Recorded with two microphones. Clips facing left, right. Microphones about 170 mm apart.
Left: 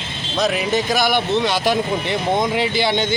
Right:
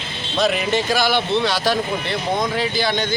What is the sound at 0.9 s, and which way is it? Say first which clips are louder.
Speech: left 1 dB; 15° left (ahead or behind).